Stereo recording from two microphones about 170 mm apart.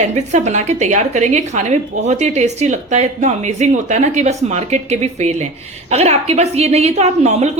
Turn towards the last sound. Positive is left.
turn(degrees=-40)  # may be behind; listen again after turning